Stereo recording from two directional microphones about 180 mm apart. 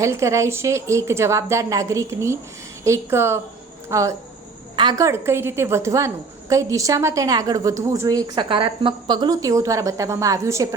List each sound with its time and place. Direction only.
0.0 s a woman's voice: 15° right (ahead or behind)